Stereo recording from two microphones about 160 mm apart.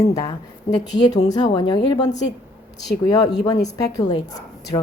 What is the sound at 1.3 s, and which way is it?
Speech, 30° left (ahead or behind).